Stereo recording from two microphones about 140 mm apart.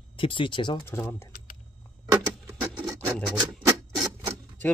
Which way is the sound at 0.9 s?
15° left (ahead or behind).